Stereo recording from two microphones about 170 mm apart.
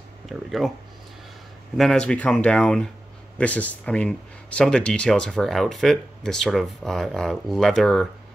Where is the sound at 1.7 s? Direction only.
Centre (ahead or behind).